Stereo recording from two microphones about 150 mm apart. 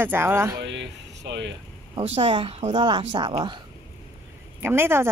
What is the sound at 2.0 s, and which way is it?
Speech, 45° right (ahead or behind).